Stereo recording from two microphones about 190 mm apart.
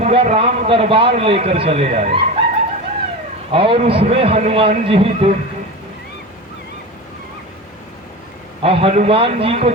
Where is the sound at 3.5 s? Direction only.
30° right (ahead or behind).